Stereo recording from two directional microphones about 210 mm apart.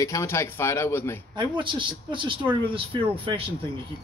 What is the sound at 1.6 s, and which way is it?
Speech, 25° right (ahead or behind).